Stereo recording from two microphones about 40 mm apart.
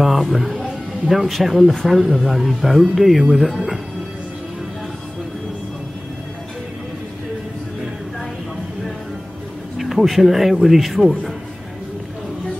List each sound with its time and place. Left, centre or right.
0.0 s music: centre
0.6 s speech: centre
9.8 s speech: centre